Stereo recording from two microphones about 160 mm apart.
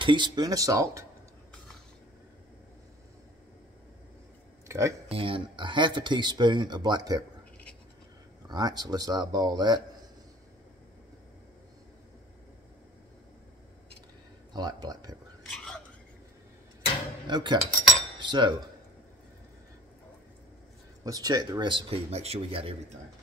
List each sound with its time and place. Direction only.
0.0 s speech: 30° right (ahead or behind)
4.6 s speech: 20° right (ahead or behind)
5.0 s speech: 35° right (ahead or behind)
8.5 s speech: 25° right (ahead or behind)
14.5 s speech: 25° right (ahead or behind)
15.4 s biting: centre (ahead or behind)
17.3 s speech: 30° right (ahead or behind)
18.2 s cutlery: 30° right (ahead or behind)
21.0 s speech: 25° right (ahead or behind)